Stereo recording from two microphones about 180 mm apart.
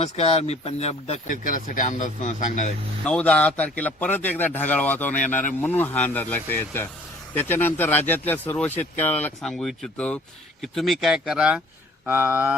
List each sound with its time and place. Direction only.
0.0 s speech: 35° left (ahead or behind)
3.0 s a man's voice: 5° left (ahead or behind); by 12.5 s 10° right (ahead or behind)